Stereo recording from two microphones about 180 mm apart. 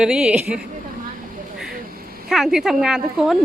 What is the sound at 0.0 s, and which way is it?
Speech, 5° right (ahead or behind).